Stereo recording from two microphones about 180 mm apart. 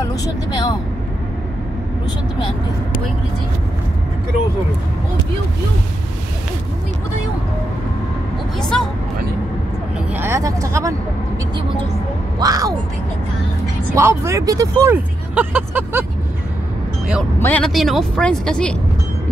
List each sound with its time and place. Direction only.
0.0 s speech: 20° left (ahead or behind)
8.5 s speech: 5° left (ahead or behind)
9.9 s speech: 10° right (ahead or behind)
12.4 s speech: 20° right (ahead or behind)
13.9 s speech: 15° right (ahead or behind)
17.4 s speech: 10° left (ahead or behind)